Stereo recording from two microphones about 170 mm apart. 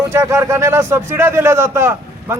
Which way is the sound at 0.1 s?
15° right (ahead or behind).